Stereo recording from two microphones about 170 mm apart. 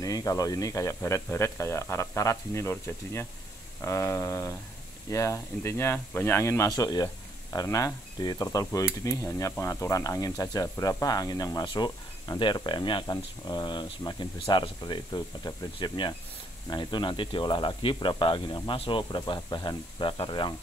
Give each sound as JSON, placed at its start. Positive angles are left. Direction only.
{"t": 0.0, "sound": "speech", "side_deg": 20}
{"t": 7.5, "sound": "insect", "side_deg": 20}